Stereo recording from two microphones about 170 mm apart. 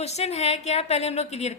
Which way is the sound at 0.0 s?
40° left (ahead or behind).